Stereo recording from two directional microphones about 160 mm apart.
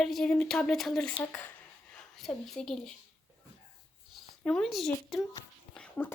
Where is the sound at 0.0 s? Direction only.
5° left (ahead or behind).